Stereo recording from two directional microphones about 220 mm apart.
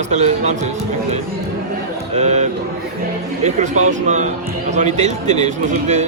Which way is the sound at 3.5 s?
30° right (ahead or behind).